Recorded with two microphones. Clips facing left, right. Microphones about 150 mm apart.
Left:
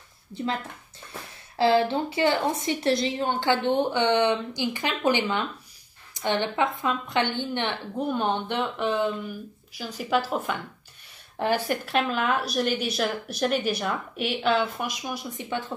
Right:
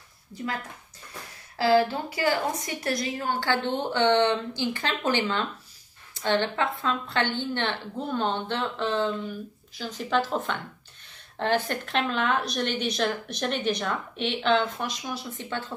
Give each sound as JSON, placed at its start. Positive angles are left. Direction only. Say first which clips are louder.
{"t": 0.3, "sound": "a woman's voice", "louder": "left 3 dB", "side_deg": 25}
{"t": 1.6, "sound": "a woman's voice", "louder": "left 1 dB", "side_deg": 25}